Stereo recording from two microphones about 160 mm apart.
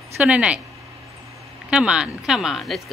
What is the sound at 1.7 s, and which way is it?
Speech, 5° right (ahead or behind).